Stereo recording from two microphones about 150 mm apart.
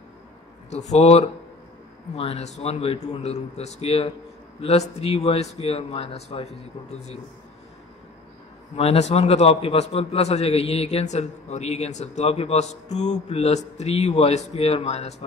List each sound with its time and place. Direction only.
0.7 s a man's voice: 50° left (ahead or behind)
8.7 s a man's voice: 45° left (ahead or behind)